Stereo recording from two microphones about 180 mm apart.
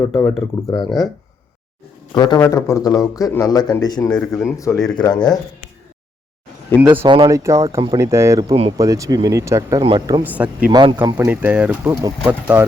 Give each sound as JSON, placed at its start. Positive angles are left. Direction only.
{"t": 0.0, "sound": "speech", "side_deg": 15}
{"t": 2.1, "sound": "speech", "side_deg": 20}
{"t": 6.7, "sound": "speech", "side_deg": -5}
{"t": 7.0, "sound": "speech", "side_deg": -25}
{"t": 8.0, "sound": "speech", "side_deg": -15}
{"t": 10.2, "sound": "speech", "side_deg": -10}
{"t": 10.7, "sound": "speech", "side_deg": -25}